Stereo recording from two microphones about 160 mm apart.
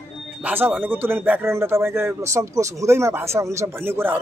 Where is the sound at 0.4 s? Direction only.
10° right (ahead or behind).